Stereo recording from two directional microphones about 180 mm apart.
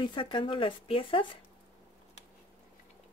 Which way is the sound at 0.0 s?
25° left (ahead or behind).